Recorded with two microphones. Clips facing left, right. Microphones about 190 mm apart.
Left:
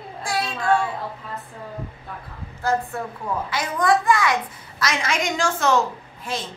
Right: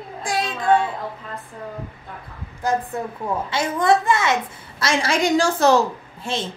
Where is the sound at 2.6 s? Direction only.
15° right (ahead or behind).